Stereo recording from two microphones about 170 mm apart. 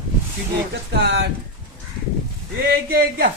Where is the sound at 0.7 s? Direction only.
90° right.